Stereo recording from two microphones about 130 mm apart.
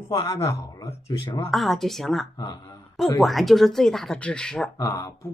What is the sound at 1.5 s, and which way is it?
Speech, centre (ahead or behind).